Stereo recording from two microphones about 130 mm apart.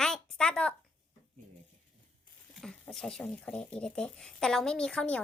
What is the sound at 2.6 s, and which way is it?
Speech, 5° left (ahead or behind).